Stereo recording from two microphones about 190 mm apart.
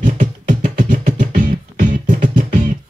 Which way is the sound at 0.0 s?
45° right (ahead or behind).